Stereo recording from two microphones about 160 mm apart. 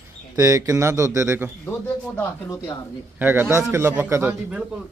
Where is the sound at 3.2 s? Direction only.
10° right (ahead or behind).